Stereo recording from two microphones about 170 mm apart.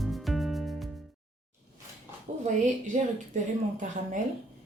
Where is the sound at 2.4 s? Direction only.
45° right (ahead or behind).